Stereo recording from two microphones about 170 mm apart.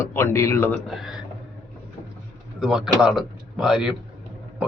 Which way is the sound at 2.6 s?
5° right (ahead or behind).